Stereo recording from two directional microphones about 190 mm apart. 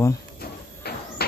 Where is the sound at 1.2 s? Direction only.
55° left (ahead or behind).